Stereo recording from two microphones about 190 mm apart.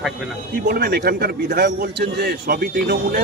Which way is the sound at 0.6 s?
55° right (ahead or behind).